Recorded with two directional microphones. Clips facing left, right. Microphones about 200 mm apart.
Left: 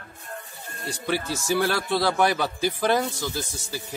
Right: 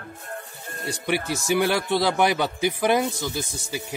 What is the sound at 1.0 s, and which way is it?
Speech, 15° right (ahead or behind).